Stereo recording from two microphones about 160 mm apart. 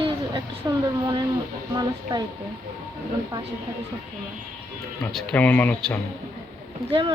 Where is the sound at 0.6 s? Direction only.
15° right (ahead or behind).